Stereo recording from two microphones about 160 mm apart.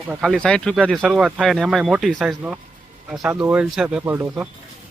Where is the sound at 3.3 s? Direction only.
10° right (ahead or behind).